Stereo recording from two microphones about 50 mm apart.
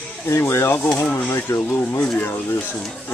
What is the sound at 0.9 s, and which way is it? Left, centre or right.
Speech, left.